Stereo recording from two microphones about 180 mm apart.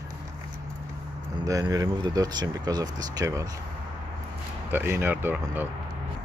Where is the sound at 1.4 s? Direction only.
20° right (ahead or behind).